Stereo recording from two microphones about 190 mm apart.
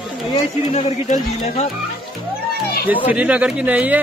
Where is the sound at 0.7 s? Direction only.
35° left (ahead or behind).